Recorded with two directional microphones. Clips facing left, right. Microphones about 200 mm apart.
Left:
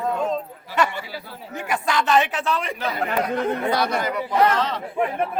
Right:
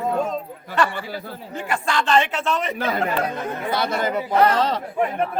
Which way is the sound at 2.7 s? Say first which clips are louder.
Right 3 dB; 50° right (ahead or behind).